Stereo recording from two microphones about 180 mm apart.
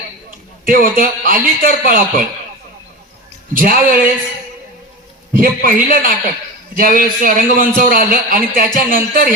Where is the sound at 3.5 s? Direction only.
50° right (ahead or behind).